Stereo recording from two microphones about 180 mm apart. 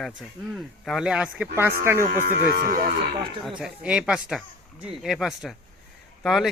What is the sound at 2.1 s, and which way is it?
Speech, 55° right (ahead or behind).